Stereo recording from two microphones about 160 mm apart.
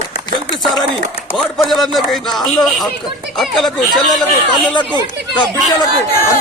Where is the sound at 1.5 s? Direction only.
Centre (ahead or behind).